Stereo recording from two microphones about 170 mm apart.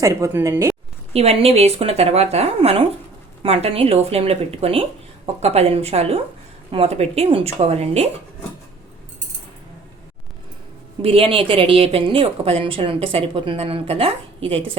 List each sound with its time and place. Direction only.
0.0 s speech: 20° right (ahead or behind)
1.1 s a woman's voice: 35° right (ahead or behind)
11.0 s a woman's voice: 35° right (ahead or behind)